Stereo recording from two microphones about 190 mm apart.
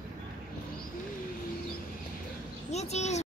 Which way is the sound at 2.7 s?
35° left (ahead or behind).